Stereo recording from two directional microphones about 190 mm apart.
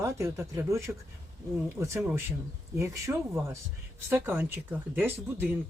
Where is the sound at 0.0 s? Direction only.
15° right (ahead or behind).